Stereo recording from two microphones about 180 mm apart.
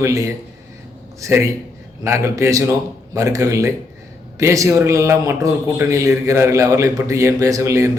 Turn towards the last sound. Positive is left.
turn(degrees=-15)  # may be behind; listen again after turning